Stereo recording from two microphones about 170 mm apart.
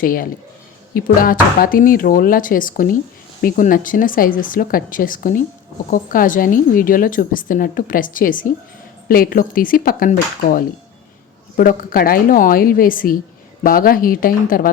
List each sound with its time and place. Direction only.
0.0 s a woman's voice: 55° left (ahead or behind)